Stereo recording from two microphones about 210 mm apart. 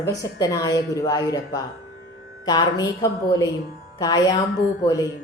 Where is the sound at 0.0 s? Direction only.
15° left (ahead or behind).